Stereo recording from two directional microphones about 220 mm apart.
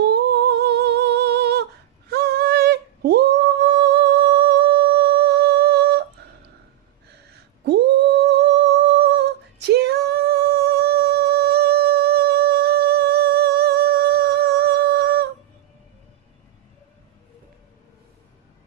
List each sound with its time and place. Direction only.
0.0 s humming: 50° right (ahead or behind)
7.3 s humming: 50° right (ahead or behind)